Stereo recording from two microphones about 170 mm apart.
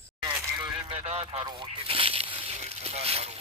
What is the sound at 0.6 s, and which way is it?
Vehicle, 35° right (ahead or behind).